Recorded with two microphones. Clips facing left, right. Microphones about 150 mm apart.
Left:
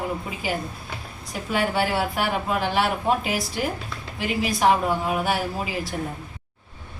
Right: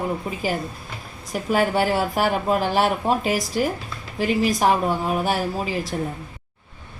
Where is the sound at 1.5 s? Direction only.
40° right (ahead or behind).